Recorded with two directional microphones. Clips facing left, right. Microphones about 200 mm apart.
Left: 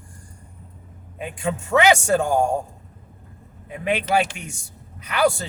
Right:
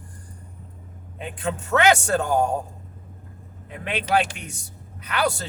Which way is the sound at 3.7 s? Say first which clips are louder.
Left 2 dB; 10° left (ahead or behind).